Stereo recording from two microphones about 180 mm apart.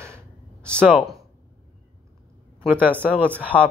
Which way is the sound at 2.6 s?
10° right (ahead or behind).